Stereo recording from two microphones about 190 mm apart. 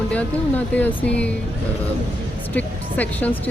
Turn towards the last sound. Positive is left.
turn(degrees=10)  # may be behind; listen again after turning